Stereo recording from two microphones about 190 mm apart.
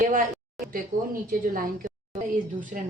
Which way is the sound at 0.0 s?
40° right (ahead or behind).